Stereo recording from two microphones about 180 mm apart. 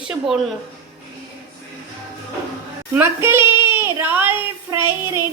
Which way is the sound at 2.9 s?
10° right (ahead or behind).